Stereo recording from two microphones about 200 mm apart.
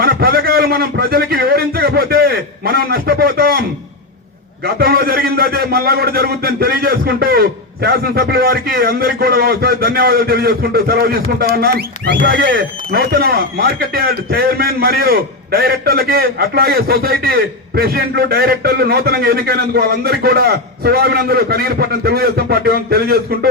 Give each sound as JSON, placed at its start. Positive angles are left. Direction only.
{"t": 0.0, "sound": "a man's voice", "side_deg": -50}
{"t": 4.6, "sound": "a man's voice", "side_deg": -50}